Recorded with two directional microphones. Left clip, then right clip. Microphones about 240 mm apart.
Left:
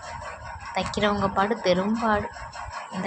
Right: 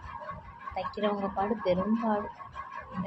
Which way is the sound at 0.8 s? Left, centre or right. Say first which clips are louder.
Left 7 dB; centre.